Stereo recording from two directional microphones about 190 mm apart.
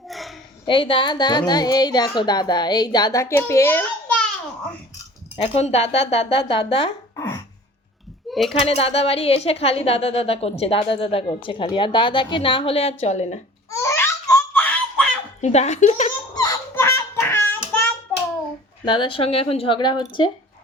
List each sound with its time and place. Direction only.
0.1 s a sound: centre (ahead or behind)
0.6 s a woman's voice: 25° left (ahead or behind)
5.4 s a woman's voice: 35° left (ahead or behind)
8.3 s a sound: centre (ahead or behind)
8.6 s a woman's voice: 30° left (ahead or behind)
13.7 s baby cry: 15° left (ahead or behind)
15.4 s a woman's voice: 35° left (ahead or behind)
16.3 s a sound: 20° left (ahead or behind)
18.9 s a woman's voice: 25° left (ahead or behind)